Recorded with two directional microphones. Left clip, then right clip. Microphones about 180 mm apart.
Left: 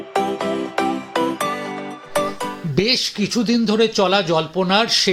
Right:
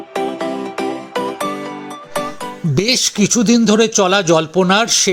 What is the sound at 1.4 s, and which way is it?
Music, centre (ahead or behind).